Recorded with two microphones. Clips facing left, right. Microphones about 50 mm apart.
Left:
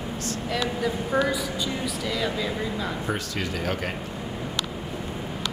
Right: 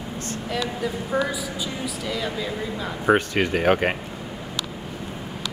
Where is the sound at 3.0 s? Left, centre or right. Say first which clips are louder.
Right 9 dB; right.